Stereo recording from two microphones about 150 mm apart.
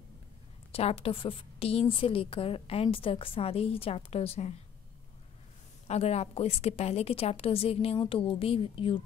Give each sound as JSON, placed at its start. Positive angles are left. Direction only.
{"t": 0.7, "sound": "a woman's voice", "side_deg": 40}
{"t": 5.9, "sound": "a woman's voice", "side_deg": 45}